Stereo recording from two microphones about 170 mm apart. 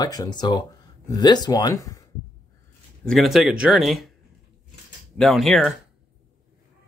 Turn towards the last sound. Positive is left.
turn(degrees=0)  # may be behind; listen again after turning